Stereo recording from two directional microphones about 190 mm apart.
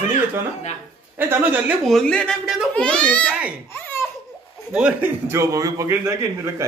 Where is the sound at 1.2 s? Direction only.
10° right (ahead or behind).